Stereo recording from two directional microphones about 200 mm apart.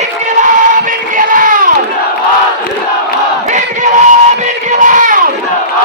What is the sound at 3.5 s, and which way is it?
Battle cry, 35° right (ahead or behind).